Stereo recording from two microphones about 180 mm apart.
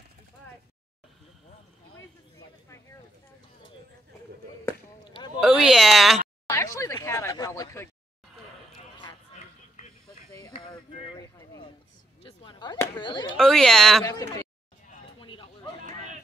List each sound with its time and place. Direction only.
5.4 s speech: centre (ahead or behind)
6.5 s speech: 15° left (ahead or behind)
12.2 s chop: 30° left (ahead or behind)
13.4 s speech: 5° left (ahead or behind)
14.0 s speech: 20° left (ahead or behind)
15.1 s a sound: 25° left (ahead or behind)